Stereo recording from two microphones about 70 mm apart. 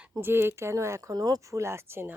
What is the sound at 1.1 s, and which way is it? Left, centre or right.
Speech, right.